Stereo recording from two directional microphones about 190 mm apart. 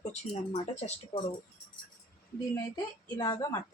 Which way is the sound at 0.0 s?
35° left (ahead or behind).